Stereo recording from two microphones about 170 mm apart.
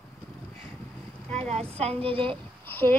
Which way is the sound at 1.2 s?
10° left (ahead or behind).